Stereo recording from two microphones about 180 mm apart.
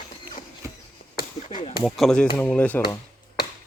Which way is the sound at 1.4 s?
35° left (ahead or behind).